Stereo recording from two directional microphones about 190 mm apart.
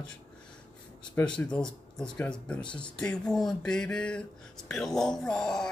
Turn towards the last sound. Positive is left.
turn(degrees=5)  # may be behind; listen again after turning